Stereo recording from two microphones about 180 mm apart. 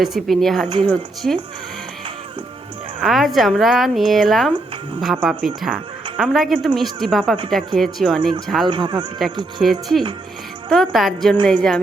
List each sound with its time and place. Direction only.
0.0 s speech: centre (ahead or behind)
3.0 s speech: centre (ahead or behind)
8.7 s speech: 25° right (ahead or behind)
9.6 s speech: centre (ahead or behind)